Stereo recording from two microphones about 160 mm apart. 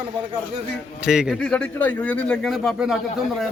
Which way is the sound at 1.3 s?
5° left (ahead or behind).